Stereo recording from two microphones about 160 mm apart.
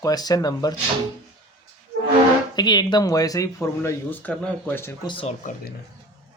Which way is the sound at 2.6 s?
25° left (ahead or behind).